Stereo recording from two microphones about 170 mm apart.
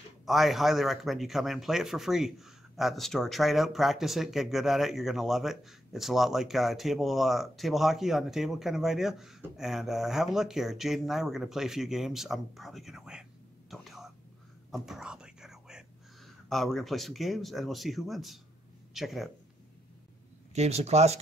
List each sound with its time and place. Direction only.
0.2 s speech: centre (ahead or behind)
13.7 s whispering: centre (ahead or behind)
16.4 s speech: centre (ahead or behind)
20.5 s speech: 40° right (ahead or behind)